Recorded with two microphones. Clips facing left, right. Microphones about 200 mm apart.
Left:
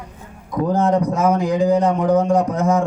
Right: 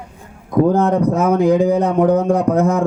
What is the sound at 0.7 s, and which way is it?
Speech, 60° right (ahead or behind).